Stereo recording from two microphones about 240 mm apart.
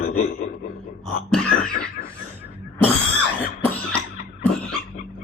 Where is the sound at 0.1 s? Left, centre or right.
Left.